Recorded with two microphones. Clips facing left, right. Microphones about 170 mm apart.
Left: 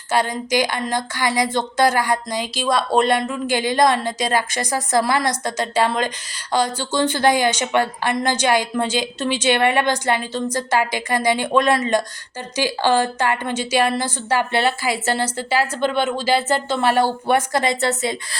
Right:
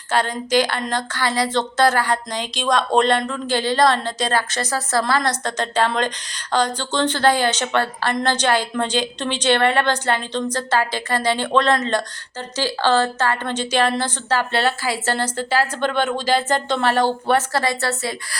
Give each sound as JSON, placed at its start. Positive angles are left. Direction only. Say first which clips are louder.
{"t": 0.1, "sound": "a woman's voice", "louder": "even", "side_deg": 10}